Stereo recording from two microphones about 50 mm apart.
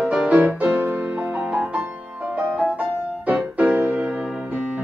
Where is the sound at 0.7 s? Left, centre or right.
Right.